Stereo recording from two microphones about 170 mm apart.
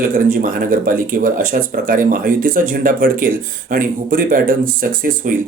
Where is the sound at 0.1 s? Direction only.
55° right (ahead or behind).